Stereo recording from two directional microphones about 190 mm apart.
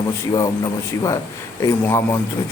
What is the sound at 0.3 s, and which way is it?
A man's voice, 15° left (ahead or behind).